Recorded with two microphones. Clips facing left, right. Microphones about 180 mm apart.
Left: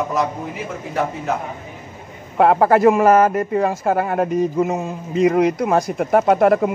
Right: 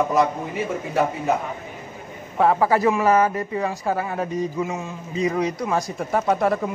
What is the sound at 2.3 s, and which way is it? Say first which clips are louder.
Speech: left 5 dB; 60° left (ahead or behind).